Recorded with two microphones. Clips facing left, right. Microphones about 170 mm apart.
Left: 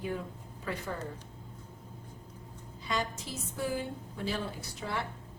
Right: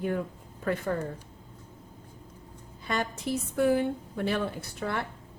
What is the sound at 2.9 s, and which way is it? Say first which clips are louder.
A woman's voice: right 5 dB; 60° right (ahead or behind).